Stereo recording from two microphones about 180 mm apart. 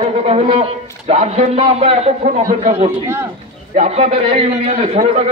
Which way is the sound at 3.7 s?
40° right (ahead or behind).